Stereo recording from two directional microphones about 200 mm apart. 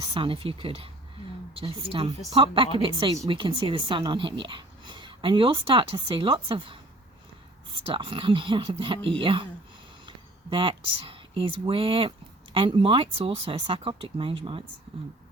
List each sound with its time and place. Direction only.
0.0 s speech: 25° right (ahead or behind)
7.9 s speech: 25° right (ahead or behind)
10.5 s speech: 25° right (ahead or behind)